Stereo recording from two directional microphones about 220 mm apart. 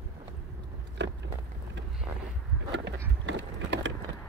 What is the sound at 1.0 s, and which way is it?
Biting, 50° right (ahead or behind).